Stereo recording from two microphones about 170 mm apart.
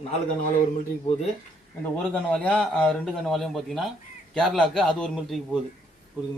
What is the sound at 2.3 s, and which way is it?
A man's voice, 5° left (ahead or behind).